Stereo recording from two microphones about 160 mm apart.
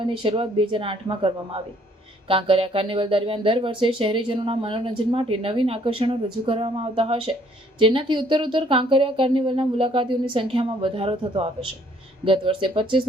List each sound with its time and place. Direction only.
0.0 s speech: 30° right (ahead or behind)